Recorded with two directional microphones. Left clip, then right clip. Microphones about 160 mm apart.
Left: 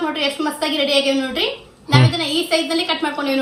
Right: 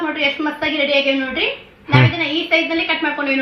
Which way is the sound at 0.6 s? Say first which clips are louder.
Right 1 dB; 15° left (ahead or behind).